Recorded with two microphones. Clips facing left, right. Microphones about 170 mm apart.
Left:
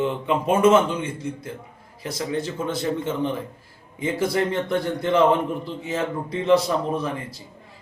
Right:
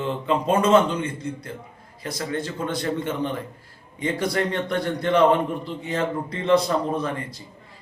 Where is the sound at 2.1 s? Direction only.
10° left (ahead or behind).